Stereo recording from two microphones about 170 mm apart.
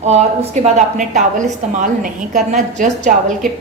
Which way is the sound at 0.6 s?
40° right (ahead or behind).